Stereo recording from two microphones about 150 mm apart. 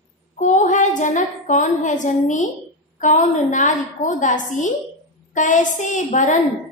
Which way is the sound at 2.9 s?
55° left (ahead or behind).